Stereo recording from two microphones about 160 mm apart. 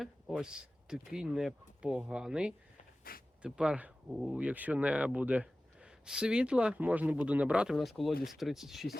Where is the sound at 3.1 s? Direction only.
65° left (ahead or behind).